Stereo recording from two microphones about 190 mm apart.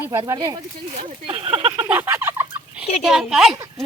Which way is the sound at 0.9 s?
30° right (ahead or behind).